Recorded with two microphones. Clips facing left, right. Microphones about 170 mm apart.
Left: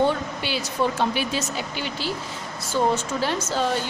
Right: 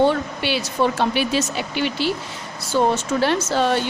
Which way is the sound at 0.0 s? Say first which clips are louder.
Right 4 dB; 70° right (ahead or behind).